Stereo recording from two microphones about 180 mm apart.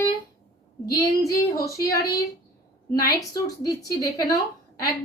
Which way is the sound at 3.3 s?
20° left (ahead or behind).